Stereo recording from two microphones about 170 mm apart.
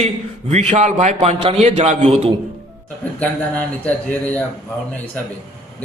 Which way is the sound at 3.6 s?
10° left (ahead or behind).